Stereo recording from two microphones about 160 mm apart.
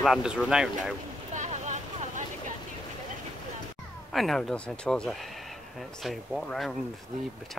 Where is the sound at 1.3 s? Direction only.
50° right (ahead or behind).